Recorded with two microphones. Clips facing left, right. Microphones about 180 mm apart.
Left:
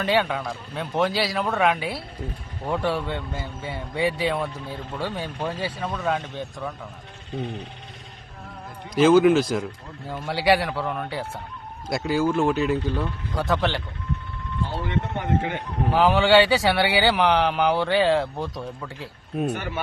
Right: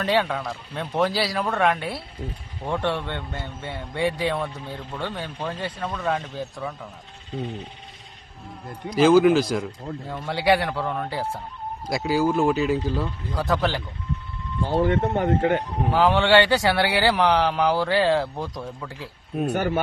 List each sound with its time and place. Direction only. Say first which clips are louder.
0.0 s speech: even; centre (ahead or behind)
9.0 s speech: even; centre (ahead or behind)
14.7 s speech: right 9 dB; 50° right (ahead or behind)
15.9 s speech: even; centre (ahead or behind)
19.5 s speech: right 5 dB; 45° right (ahead or behind)